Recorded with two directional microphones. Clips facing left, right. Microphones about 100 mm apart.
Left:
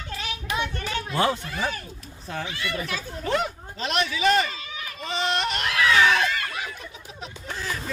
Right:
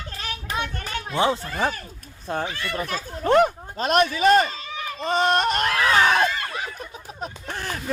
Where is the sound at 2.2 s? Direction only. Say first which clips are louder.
Right 4 dB; 45° right (ahead or behind).